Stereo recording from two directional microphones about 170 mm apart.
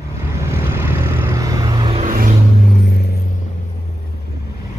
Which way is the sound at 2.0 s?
50° right (ahead or behind).